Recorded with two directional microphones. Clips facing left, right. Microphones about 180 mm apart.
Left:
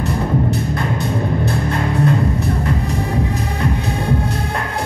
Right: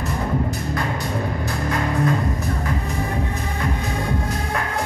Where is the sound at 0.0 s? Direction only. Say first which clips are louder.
Left 5 dB; 25° left (ahead or behind).